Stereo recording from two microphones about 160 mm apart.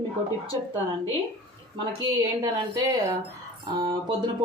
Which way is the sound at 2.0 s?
25° right (ahead or behind).